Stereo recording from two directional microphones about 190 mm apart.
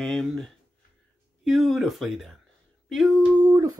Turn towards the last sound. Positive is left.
turn(degrees=-15)  # may be behind; listen again after turning